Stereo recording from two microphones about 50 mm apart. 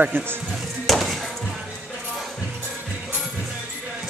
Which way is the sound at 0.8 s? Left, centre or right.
Centre.